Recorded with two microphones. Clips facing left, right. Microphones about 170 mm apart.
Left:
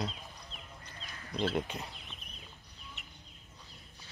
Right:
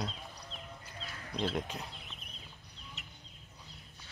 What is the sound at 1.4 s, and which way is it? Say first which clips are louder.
Speech: left 2 dB; centre (ahead or behind).